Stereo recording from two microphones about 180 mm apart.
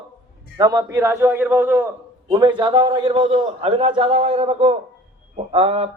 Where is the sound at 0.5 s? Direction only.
20° right (ahead or behind).